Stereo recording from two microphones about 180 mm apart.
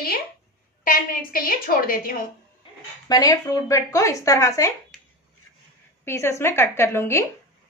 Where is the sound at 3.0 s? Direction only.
20° left (ahead or behind).